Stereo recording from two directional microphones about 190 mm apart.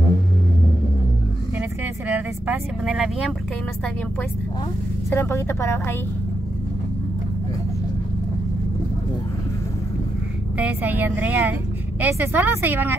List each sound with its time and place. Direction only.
1.6 s vehicle: 10° right (ahead or behind)
5.1 s a woman's voice: 15° left (ahead or behind)
10.6 s a woman's voice: 10° right (ahead or behind)